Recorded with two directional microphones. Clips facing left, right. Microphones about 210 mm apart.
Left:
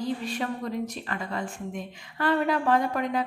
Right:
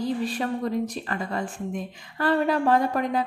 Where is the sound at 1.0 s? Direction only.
35° right (ahead or behind).